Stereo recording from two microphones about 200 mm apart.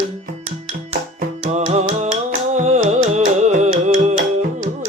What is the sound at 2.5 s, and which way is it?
Music, 35° right (ahead or behind).